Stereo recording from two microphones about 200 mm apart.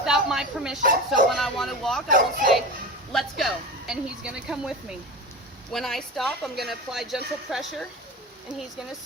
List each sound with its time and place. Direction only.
0.0 s a sound: centre (ahead or behind)
0.8 s speech: 45° right (ahead or behind)
1.4 s speech: centre (ahead or behind)
2.0 s speech: 45° right (ahead or behind)
3.1 s speech: centre (ahead or behind)
5.7 s speech: centre (ahead or behind)